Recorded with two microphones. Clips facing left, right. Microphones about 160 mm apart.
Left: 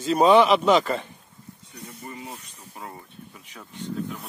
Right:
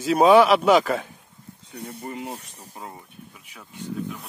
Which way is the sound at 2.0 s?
70° right (ahead or behind).